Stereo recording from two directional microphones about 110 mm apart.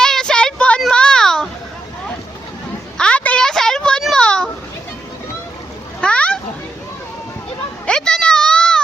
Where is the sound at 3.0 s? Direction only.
10° left (ahead or behind).